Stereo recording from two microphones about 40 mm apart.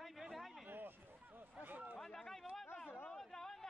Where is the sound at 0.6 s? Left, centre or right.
Right.